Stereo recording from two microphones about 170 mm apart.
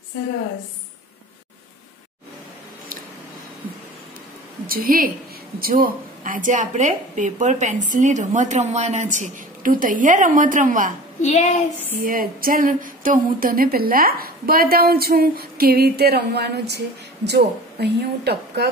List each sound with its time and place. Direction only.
4.6 s a woman's voice: 60° right (ahead or behind)
11.2 s speech: 40° left (ahead or behind)
12.0 s speech: 55° right (ahead or behind); by 18.7 s 75° right (ahead or behind)